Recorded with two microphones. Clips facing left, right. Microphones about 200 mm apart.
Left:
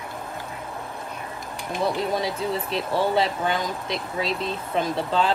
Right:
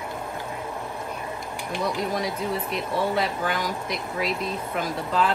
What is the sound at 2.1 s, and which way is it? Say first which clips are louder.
Speech: left 1 dB; 30° left (ahead or behind).